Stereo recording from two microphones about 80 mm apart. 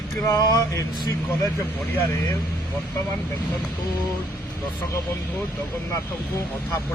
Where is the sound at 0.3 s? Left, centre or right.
Left.